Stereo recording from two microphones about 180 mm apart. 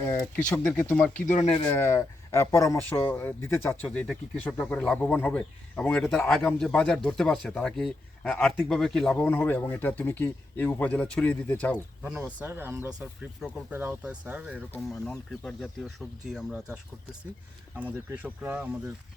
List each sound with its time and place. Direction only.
0.0 s a sound: 15° left (ahead or behind)
0.5 s speech: 10° left (ahead or behind)
1.3 s speech: 40° left (ahead or behind)
1.6 s speech: 15° left (ahead or behind)
12.0 s speech: 5° right (ahead or behind)
14.7 s speech: 10° left (ahead or behind)
17.7 s speech: 10° right (ahead or behind)